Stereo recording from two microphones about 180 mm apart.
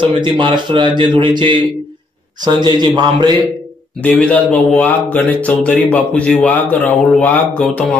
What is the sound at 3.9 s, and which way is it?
Speech, 10° left (ahead or behind).